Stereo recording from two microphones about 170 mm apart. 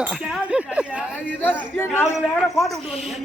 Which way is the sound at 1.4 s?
10° left (ahead or behind).